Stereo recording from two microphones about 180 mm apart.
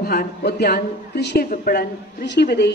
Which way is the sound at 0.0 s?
55° left (ahead or behind).